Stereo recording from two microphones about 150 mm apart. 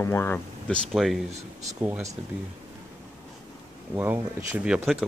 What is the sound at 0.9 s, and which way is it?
Speech, centre (ahead or behind).